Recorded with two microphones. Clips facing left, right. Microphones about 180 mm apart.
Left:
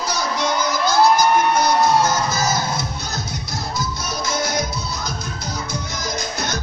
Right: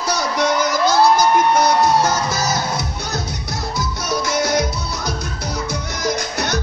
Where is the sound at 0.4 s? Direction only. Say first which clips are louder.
Right 5 dB; 75° right (ahead or behind).